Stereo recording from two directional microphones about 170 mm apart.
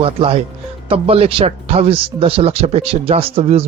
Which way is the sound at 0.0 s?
35° right (ahead or behind).